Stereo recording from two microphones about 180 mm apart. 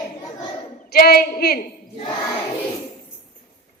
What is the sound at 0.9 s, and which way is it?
Speech, 55° left (ahead or behind).